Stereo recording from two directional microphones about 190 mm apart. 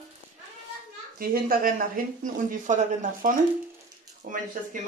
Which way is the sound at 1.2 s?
50° right (ahead or behind).